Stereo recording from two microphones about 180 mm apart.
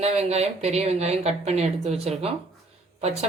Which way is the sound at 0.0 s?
35° right (ahead or behind).